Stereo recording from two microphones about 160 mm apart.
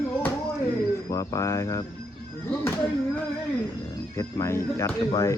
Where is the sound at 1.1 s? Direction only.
20° left (ahead or behind).